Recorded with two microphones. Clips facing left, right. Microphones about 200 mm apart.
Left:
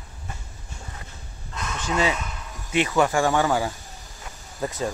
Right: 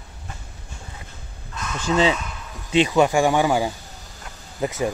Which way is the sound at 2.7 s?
20° right (ahead or behind).